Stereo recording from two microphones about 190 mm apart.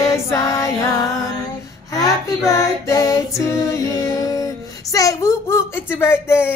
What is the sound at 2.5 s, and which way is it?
Female singing, 15° left (ahead or behind).